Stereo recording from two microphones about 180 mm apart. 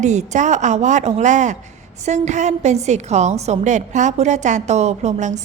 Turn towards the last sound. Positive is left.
turn(degrees=-40)  # may be behind; listen again after turning